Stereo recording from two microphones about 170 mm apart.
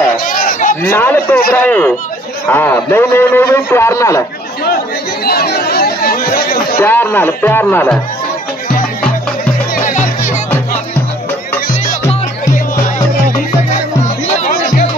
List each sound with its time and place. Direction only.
0.2 s a sound: 60° left (ahead or behind)
0.8 s a man's voice: 10° left (ahead or behind)
5.2 s chatter: 65° left (ahead or behind)
6.8 s a man's voice: 10° left (ahead or behind)
9.4 s music: 50° left (ahead or behind)
14.4 s music: 50° left (ahead or behind)